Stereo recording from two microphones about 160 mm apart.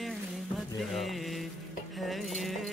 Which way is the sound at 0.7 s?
Centre (ahead or behind).